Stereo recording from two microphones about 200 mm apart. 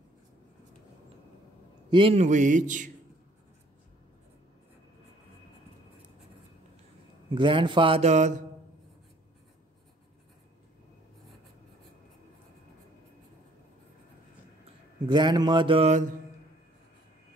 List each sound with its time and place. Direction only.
1.9 s a man's voice: 25° right (ahead or behind)
7.3 s a man's voice: 25° right (ahead or behind)
15.0 s a man's voice: 20° right (ahead or behind)